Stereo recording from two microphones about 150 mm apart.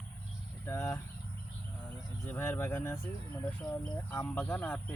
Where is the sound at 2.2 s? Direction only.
15° left (ahead or behind).